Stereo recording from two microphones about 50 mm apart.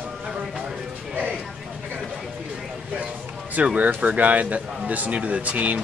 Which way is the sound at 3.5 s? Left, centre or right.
Right.